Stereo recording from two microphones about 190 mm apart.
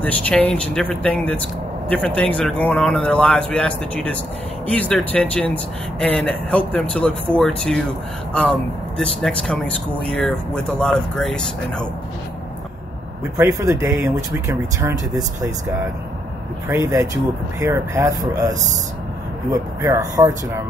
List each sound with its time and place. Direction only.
0.0 s speech: 5° left (ahead or behind)
13.4 s speech: 15° right (ahead or behind)
19.5 s speech: 20° right (ahead or behind)